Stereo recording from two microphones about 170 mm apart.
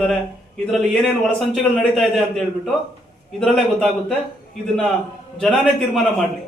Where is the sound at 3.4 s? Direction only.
5° left (ahead or behind).